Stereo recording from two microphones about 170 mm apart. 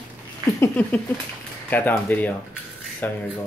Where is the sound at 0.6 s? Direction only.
10° left (ahead or behind).